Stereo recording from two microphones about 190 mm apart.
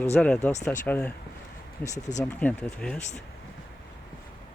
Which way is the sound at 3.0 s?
35° left (ahead or behind).